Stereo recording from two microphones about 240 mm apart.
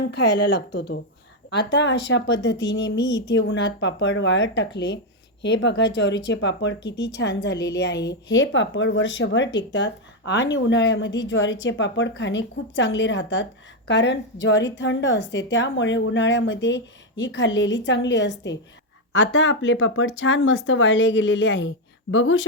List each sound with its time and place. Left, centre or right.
0.7 s speech: left